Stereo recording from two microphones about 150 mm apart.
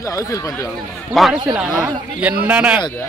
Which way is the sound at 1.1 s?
Centre (ahead or behind).